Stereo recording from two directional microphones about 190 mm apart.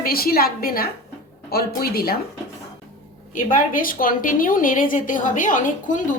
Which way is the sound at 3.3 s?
45° left (ahead or behind).